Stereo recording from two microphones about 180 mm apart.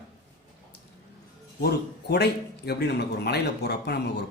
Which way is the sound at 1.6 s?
65° left (ahead or behind).